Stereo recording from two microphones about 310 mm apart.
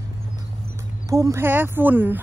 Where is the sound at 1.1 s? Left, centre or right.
Centre.